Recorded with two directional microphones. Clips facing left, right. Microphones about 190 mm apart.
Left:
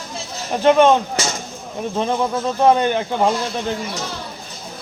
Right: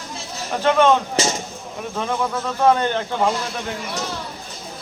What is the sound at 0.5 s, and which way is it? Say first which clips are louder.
Speech: left 3 dB; 20° left (ahead or behind).